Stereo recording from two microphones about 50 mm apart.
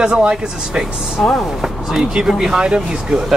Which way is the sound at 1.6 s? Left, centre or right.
Centre.